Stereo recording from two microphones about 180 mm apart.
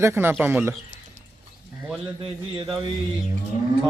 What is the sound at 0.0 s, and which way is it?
Speech, 15° right (ahead or behind).